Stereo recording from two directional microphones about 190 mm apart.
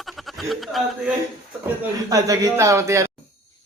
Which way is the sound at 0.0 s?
Centre (ahead or behind).